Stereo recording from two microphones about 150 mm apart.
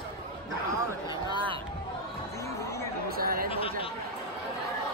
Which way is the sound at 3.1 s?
80° right.